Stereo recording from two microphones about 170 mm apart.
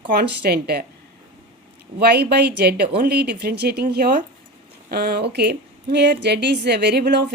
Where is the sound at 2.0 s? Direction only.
70° right (ahead or behind).